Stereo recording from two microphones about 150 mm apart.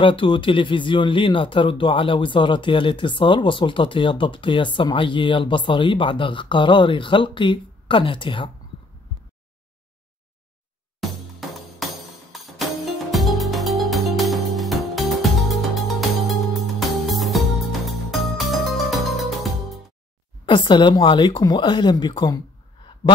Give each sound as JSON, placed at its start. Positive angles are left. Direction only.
{"t": 0.0, "sound": "speech", "side_deg": 35}
{"t": 11.0, "sound": "music", "side_deg": 0}
{"t": 20.4, "sound": "speech", "side_deg": 30}